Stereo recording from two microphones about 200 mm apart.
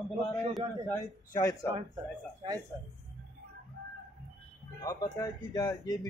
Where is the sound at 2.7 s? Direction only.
20° right (ahead or behind).